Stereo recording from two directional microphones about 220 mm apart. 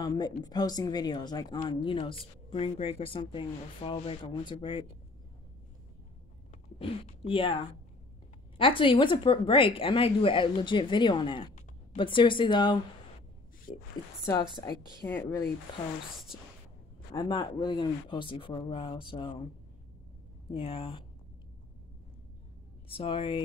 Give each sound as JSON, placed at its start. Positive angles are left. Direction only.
{"t": 0.0, "sound": "speech", "side_deg": 20}
{"t": 6.5, "sound": "speech", "side_deg": 25}
{"t": 8.5, "sound": "speech", "side_deg": 25}
{"t": 13.7, "sound": "speech", "side_deg": 40}
{"t": 14.2, "sound": "a woman's voice", "side_deg": 15}
{"t": 17.1, "sound": "speech", "side_deg": 20}
{"t": 20.5, "sound": "speech", "side_deg": 25}
{"t": 22.8, "sound": "speech", "side_deg": 25}